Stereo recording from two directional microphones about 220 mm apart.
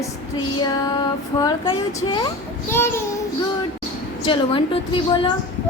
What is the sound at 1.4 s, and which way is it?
Speech, 20° left (ahead or behind).